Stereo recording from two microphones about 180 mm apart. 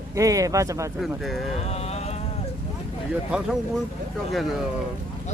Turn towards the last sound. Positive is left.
turn(degrees=0)  # may be behind; listen again after turning